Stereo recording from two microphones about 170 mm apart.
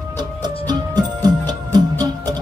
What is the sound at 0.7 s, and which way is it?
Music, 25° right (ahead or behind).